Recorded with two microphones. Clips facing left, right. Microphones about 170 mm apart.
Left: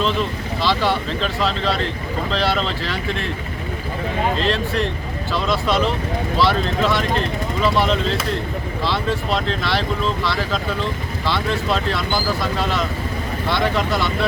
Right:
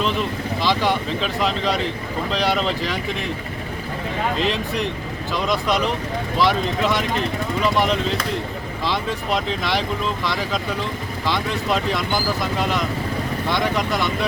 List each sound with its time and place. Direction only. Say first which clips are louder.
0.0 s speech: left 1 dB; 10° right (ahead or behind)
4.4 s speech: left 2 dB; 15° right (ahead or behind)
11.3 s speech: left 1 dB; 15° right (ahead or behind)